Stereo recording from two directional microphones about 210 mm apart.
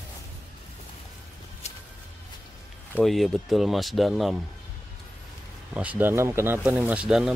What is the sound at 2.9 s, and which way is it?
Speech, centre (ahead or behind).